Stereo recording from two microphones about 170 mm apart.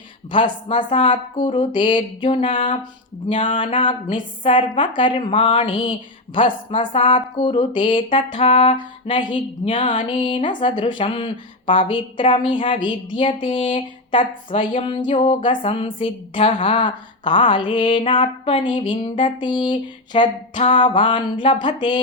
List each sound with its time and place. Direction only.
0.3 s a woman's voice: 30° left (ahead or behind)
13.1 s a sound: 30° left (ahead or behind)
15.4 s a woman's voice: 30° left (ahead or behind)